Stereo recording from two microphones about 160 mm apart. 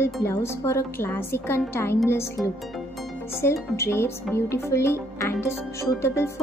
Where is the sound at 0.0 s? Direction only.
15° left (ahead or behind).